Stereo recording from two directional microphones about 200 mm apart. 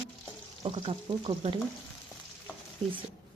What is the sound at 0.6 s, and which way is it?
Speech, 30° right (ahead or behind).